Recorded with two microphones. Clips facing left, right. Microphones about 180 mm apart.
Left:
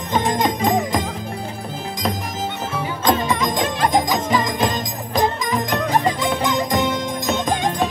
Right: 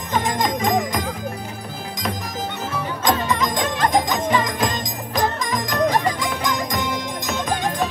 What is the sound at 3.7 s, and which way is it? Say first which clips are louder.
Jingle bell: even; 5° left (ahead or behind).